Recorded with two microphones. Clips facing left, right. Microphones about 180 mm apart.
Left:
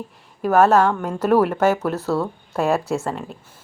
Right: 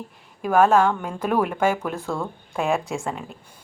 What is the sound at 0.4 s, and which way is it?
Speech, 40° left (ahead or behind).